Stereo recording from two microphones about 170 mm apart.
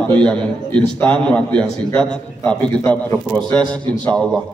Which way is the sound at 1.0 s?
5° left (ahead or behind).